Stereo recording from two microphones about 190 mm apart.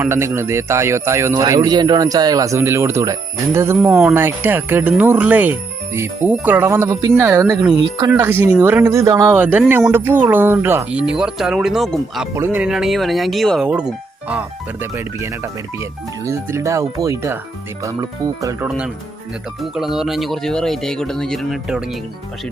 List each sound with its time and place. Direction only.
0.0 s speech: 15° right (ahead or behind)
12.3 s speech: 10° right (ahead or behind)
19.7 s speech: centre (ahead or behind)